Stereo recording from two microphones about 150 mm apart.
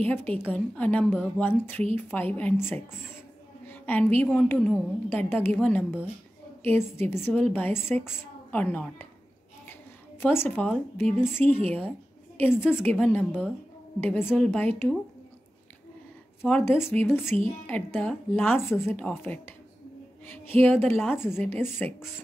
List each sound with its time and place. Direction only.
0.0 s a woman's voice: 10° left (ahead or behind)
10.2 s a woman's voice: 15° left (ahead or behind)
16.4 s a woman's voice: 15° left (ahead or behind)